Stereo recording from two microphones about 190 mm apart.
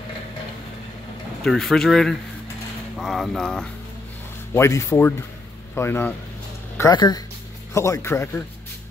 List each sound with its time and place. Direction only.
1.4 s speech: centre (ahead or behind)
4.6 s speech: 15° left (ahead or behind)